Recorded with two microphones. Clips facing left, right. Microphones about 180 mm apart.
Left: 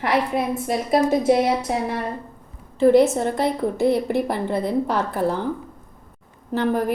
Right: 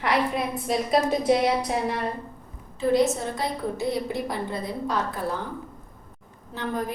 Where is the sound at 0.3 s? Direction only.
55° left (ahead or behind).